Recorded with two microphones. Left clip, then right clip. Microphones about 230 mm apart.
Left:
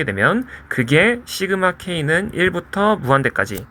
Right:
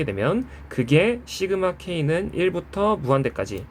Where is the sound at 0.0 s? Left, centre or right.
Left.